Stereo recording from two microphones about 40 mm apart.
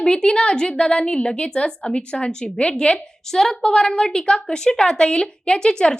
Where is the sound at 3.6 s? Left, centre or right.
Centre.